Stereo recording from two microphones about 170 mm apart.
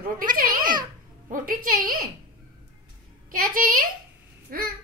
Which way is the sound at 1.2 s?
50° right (ahead or behind).